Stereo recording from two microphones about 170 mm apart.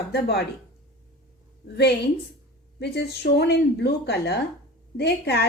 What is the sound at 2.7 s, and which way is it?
A woman's voice, 75° left (ahead or behind).